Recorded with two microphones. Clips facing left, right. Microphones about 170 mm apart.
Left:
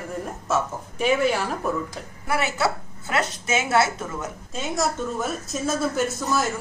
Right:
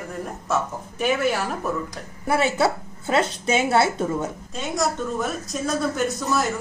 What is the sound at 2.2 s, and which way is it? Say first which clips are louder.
A woman's voice: right 4 dB; 25° right (ahead or behind).